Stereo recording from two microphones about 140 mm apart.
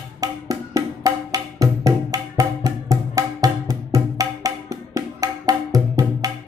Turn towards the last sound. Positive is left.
turn(degrees=-25)  # may be behind; listen again after turning